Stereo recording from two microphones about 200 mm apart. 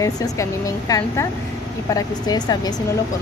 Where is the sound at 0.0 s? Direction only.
15° left (ahead or behind).